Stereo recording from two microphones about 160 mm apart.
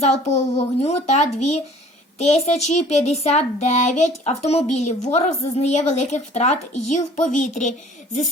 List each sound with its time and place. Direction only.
0.0 s speech: 40° left (ahead or behind)